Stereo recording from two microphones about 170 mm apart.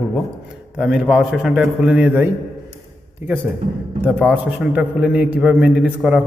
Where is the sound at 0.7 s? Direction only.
5° right (ahead or behind).